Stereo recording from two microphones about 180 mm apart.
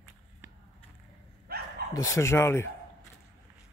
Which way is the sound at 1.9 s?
15° left (ahead or behind).